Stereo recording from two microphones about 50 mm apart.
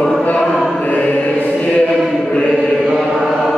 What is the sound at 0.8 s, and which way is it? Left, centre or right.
Chant, left.